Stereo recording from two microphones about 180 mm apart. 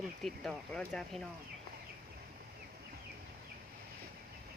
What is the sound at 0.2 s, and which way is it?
Speech, centre (ahead or behind).